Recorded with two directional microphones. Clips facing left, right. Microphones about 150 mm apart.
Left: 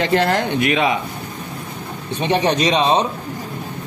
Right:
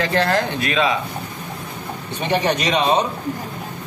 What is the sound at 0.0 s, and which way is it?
Speech, 25° left (ahead or behind).